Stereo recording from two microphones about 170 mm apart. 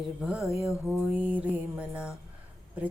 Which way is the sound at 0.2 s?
5° right (ahead or behind).